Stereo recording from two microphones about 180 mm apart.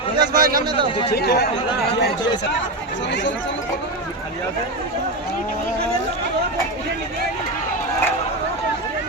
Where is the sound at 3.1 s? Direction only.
80° left.